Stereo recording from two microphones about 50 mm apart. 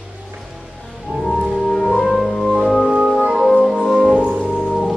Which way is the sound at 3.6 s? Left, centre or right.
Centre.